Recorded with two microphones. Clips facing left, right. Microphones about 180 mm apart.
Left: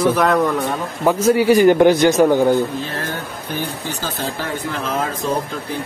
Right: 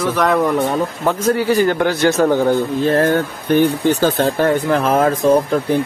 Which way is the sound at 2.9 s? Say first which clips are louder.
Right 12 dB; 55° right (ahead or behind).